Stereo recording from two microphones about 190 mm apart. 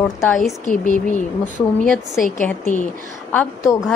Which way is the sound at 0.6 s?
40° left (ahead or behind).